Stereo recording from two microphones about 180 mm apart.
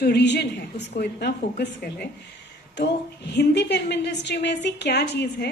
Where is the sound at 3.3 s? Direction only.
70° left (ahead or behind).